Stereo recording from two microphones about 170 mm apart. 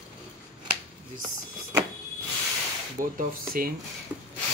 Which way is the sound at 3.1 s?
60° right (ahead or behind).